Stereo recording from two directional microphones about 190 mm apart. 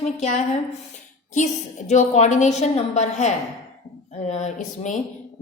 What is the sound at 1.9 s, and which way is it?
A woman's voice, 35° left (ahead or behind).